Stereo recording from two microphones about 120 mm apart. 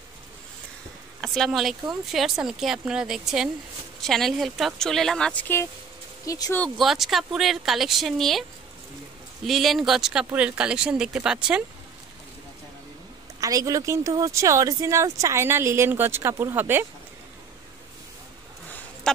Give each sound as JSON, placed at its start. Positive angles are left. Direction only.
{"t": 1.2, "sound": "speech", "side_deg": 0}
{"t": 6.2, "sound": "speech", "side_deg": 30}
{"t": 6.8, "sound": "speech", "side_deg": 0}
{"t": 9.5, "sound": "speech", "side_deg": 0}
{"t": 13.4, "sound": "speech", "side_deg": -30}
{"t": 19.1, "sound": "a sound", "side_deg": 5}